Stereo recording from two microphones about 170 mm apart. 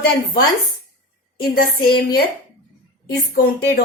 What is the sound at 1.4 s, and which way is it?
Speech, 60° left (ahead or behind).